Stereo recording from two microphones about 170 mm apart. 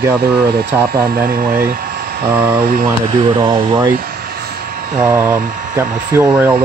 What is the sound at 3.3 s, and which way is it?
Speech, 25° right (ahead or behind).